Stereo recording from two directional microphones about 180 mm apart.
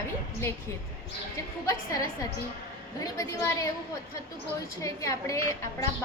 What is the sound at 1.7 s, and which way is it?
A woman's voice, 20° left (ahead or behind).